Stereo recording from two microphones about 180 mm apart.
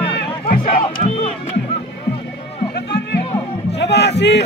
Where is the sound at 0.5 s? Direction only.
30° left (ahead or behind).